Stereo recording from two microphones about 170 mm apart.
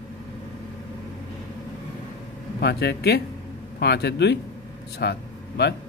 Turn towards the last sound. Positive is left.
turn(degrees=80)